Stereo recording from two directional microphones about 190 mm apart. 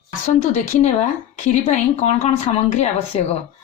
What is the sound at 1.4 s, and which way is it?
Speech, 35° left (ahead or behind).